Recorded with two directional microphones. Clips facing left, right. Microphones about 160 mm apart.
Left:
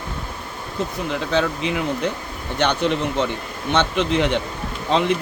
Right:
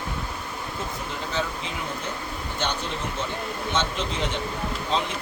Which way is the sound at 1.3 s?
70° left (ahead or behind).